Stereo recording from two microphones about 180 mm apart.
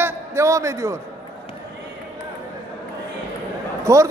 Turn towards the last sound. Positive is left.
turn(degrees=-15)  # may be behind; listen again after turning